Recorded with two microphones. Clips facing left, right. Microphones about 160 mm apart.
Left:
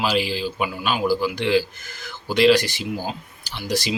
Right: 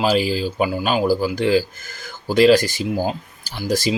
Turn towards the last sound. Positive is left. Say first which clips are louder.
# right 4 dB
turn(degrees=-45)  # may be behind; listen again after turning